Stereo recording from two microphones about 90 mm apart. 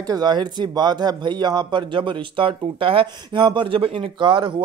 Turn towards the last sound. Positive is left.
turn(degrees=-60)  # may be behind; listen again after turning